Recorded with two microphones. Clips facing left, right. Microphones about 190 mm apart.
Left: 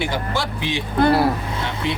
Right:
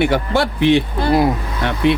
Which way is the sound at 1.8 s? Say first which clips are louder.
Right 11 dB; 60° right (ahead or behind).